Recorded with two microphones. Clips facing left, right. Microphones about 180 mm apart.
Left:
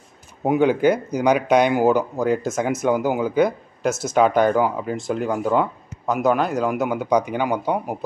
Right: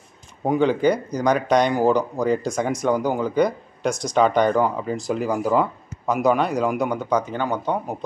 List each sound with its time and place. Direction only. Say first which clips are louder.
0.4 s speech: left 2 dB; 10° left (ahead or behind)